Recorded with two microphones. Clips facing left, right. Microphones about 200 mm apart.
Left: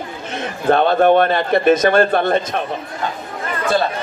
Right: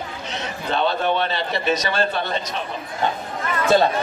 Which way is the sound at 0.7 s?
50° left (ahead or behind).